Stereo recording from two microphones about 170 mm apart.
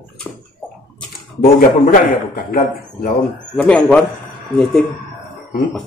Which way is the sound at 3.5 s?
5° left (ahead or behind).